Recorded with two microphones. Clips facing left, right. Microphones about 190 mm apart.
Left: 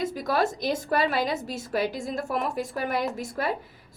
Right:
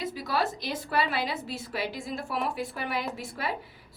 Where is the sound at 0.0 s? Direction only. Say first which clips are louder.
Left 4 dB; 45° left (ahead or behind).